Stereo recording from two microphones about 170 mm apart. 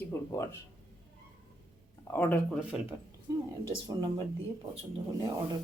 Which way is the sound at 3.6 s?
30° right (ahead or behind).